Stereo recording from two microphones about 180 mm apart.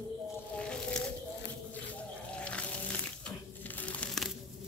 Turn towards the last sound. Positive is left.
turn(degrees=5)  # may be behind; listen again after turning